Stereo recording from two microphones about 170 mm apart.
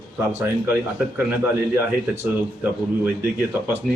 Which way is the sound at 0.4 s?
10° right (ahead or behind).